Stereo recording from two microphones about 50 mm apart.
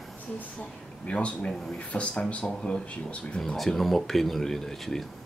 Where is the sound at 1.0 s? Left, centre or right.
Left.